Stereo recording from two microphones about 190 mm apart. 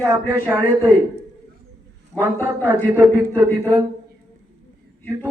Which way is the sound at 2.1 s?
10° left (ahead or behind).